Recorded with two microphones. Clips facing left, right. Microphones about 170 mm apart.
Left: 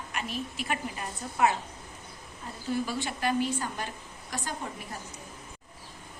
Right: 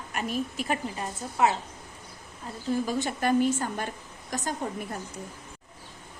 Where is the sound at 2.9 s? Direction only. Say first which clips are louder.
Right 4 dB; 45° right (ahead or behind).